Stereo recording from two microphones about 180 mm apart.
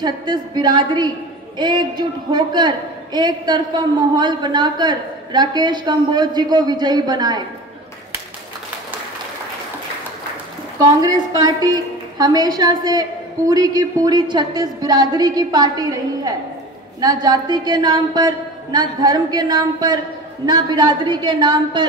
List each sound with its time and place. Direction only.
0.0 s a man's voice: 25° right (ahead or behind)
10.8 s a man's voice: 20° right (ahead or behind)